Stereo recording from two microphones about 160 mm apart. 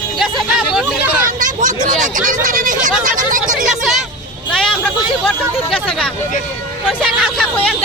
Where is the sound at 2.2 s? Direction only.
55° right (ahead or behind).